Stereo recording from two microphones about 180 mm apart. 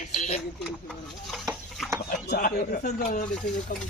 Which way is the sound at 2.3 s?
55° left (ahead or behind).